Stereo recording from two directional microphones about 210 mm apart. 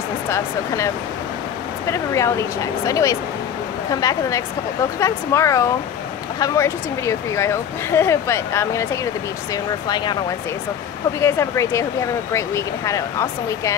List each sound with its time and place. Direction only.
0.3 s speech: 15° left (ahead or behind)
11.1 s speech: 15° left (ahead or behind)